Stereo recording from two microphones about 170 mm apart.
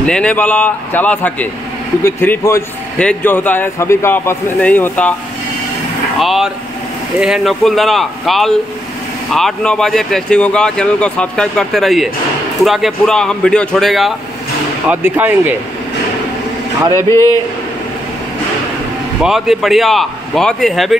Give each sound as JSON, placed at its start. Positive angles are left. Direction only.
{"t": 0.0, "sound": "speech", "side_deg": 5}
{"t": 6.1, "sound": "speech", "side_deg": 0}
{"t": 14.9, "sound": "speech", "side_deg": -10}
{"t": 16.9, "sound": "speech", "side_deg": 20}
{"t": 19.2, "sound": "speech", "side_deg": 0}